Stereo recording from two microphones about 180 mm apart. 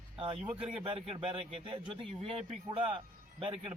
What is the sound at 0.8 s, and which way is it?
Speech, 35° right (ahead or behind).